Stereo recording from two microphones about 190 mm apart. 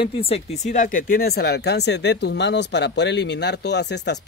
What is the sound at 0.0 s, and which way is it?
Speech, 30° left (ahead or behind).